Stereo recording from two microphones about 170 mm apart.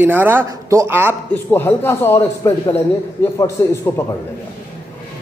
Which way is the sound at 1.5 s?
15° left (ahead or behind).